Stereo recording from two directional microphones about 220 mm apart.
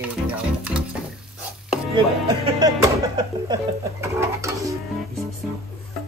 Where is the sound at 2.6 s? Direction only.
20° right (ahead or behind).